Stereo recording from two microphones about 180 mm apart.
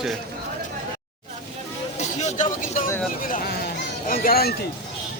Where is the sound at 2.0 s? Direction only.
40° left (ahead or behind).